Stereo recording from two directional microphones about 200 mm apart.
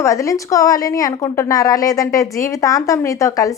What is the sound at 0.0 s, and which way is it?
A woman's voice, 15° left (ahead or behind).